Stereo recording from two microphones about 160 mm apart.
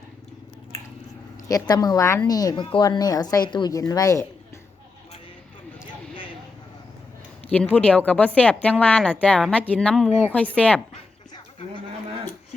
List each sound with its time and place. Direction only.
1.5 s speech: 25° left (ahead or behind)
7.5 s a woman's voice: 10° left (ahead or behind)